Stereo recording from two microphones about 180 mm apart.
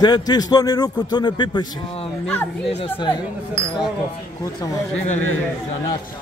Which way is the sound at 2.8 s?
25° left (ahead or behind).